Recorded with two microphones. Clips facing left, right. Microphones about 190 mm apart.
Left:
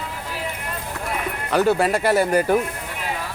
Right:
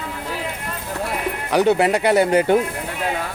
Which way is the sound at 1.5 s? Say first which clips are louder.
Right 2 dB; 20° right (ahead or behind).